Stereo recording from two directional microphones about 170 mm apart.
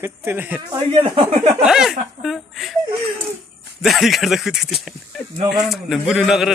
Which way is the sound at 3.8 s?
Centre (ahead or behind).